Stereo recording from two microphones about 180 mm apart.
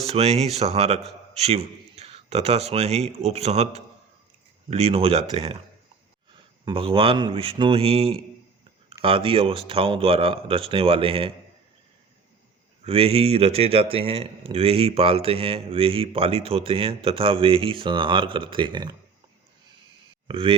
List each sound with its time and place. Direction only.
0.1 s speech: 35° right (ahead or behind)
6.7 s speech: 30° right (ahead or behind)
12.8 s speech: 30° right (ahead or behind)
20.2 s speech: 30° right (ahead or behind)